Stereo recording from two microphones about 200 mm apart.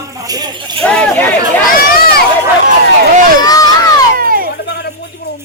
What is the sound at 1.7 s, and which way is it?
Run, 45° left (ahead or behind).